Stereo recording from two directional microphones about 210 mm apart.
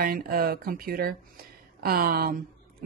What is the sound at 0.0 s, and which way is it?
A woman's voice, 45° right (ahead or behind).